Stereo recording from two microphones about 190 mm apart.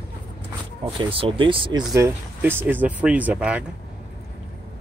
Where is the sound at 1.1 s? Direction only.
30° right (ahead or behind); by 3.6 s 5° right (ahead or behind).